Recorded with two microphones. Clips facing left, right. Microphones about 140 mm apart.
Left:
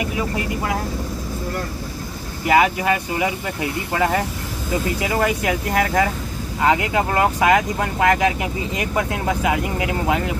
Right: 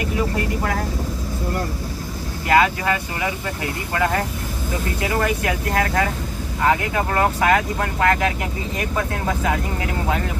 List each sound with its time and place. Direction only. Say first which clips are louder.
2.4 s speech: left 1 dB; 15° left (ahead or behind)
5.2 s speech: left 2 dB; 15° left (ahead or behind)